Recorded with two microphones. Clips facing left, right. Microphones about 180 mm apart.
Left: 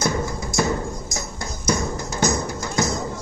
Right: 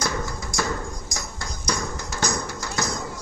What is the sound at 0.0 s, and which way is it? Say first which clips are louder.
Music: left 5 dB; 25° left (ahead or behind).